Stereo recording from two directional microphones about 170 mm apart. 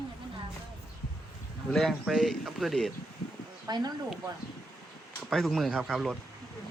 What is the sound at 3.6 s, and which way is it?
Speech, 20° right (ahead or behind).